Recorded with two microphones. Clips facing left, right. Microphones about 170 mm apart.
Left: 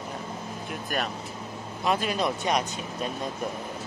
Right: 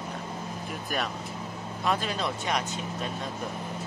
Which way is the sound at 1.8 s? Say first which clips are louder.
Left 3 dB; 10° left (ahead or behind).